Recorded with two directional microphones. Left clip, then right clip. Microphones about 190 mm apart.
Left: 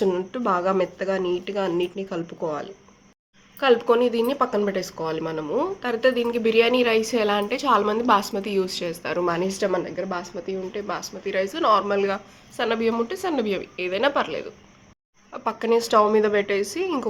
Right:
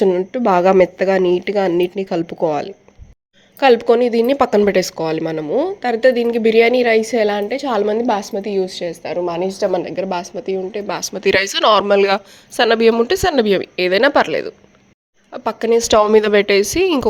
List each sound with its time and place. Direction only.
0.0 s speech: 30° right (ahead or behind)
4.4 s speech: 45° right (ahead or behind); by 9.6 s 10° right (ahead or behind)
9.7 s speech: 30° right (ahead or behind)
10.8 s a woman's voice: 45° right (ahead or behind)
15.3 s a woman's voice: 30° right (ahead or behind)